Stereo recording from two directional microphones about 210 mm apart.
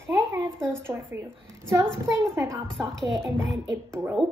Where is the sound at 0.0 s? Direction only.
15° right (ahead or behind).